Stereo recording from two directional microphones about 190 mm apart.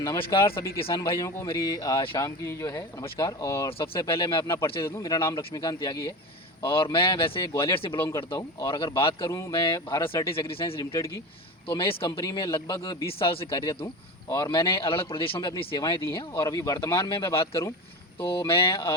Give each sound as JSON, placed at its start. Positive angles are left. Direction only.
{"t": 0.0, "sound": "a man's voice", "side_deg": 20}
{"t": 3.7, "sound": "a man's voice", "side_deg": 30}